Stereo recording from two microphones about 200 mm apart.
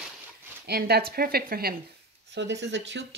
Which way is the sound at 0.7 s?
55° right (ahead or behind).